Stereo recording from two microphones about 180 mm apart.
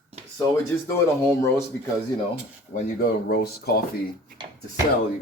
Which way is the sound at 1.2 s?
15° left (ahead or behind).